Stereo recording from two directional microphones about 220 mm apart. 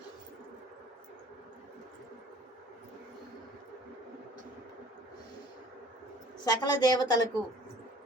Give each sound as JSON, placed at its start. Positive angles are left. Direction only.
{"t": 6.4, "sound": "a woman's voice", "side_deg": 20}